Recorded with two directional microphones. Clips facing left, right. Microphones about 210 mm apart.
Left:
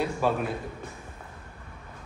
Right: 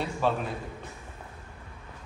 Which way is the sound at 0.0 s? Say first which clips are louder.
Left 2 dB; 10° left (ahead or behind).